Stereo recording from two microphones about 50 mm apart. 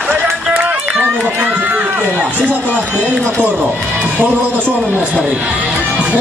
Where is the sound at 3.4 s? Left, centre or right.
Right.